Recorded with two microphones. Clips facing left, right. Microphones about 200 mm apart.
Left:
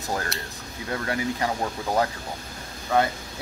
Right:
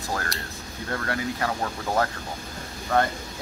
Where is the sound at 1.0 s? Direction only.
15° left (ahead or behind).